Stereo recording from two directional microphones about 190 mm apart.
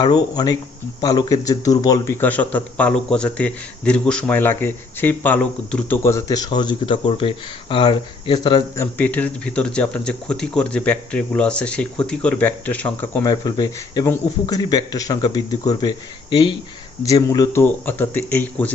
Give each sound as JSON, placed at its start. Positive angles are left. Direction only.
{"t": 0.0, "sound": "a man's voice", "side_deg": 20}
{"t": 8.8, "sound": "speech", "side_deg": 10}
{"t": 13.2, "sound": "a man's voice", "side_deg": 20}